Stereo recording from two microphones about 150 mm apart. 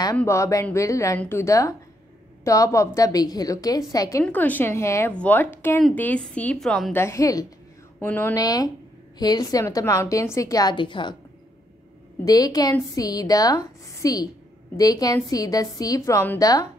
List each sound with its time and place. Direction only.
0.2 s a woman's voice: 20° left (ahead or behind)
4.2 s a woman's voice: 10° left (ahead or behind)
6.9 s a woman's voice: 15° left (ahead or behind)
8.4 s a woman's voice: 25° left (ahead or behind)
12.3 s a woman's voice: 25° left (ahead or behind)